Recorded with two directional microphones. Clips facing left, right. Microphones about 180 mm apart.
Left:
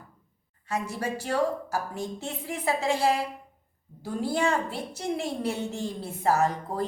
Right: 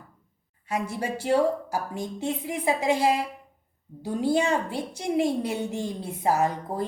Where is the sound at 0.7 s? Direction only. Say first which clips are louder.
Right 1 dB; 15° right (ahead or behind).